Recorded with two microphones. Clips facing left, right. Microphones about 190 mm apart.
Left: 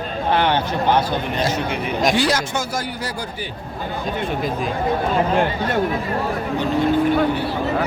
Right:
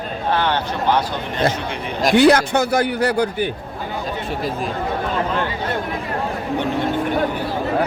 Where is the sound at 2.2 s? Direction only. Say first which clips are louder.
Right 7 dB; 60° right (ahead or behind).